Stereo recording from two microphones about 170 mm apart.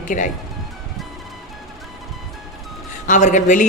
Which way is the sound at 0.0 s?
50° left (ahead or behind).